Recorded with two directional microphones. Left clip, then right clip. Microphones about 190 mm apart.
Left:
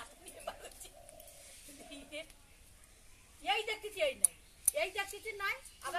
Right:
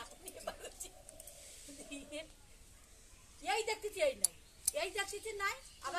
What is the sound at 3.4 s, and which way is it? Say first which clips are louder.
A child's voice: left 1 dB; 60° right (ahead or behind).